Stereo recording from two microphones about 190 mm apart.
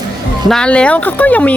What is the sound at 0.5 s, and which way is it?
Speech, 5° left (ahead or behind).